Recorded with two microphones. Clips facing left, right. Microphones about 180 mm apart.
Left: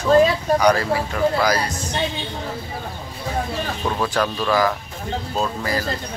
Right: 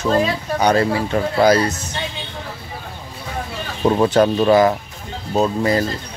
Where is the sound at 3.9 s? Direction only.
25° right (ahead or behind).